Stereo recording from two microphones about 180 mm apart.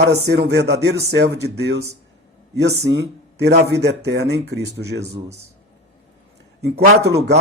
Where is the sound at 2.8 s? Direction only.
70° right (ahead or behind).